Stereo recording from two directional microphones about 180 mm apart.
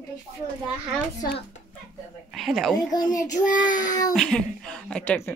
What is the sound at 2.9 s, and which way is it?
Speech, 20° left (ahead or behind).